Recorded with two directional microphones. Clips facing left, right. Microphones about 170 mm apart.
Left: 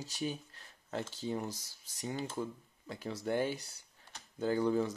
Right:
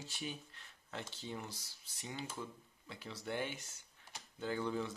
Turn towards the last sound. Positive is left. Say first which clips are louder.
# left 8 dB
turn(degrees=40)  # may be behind; listen again after turning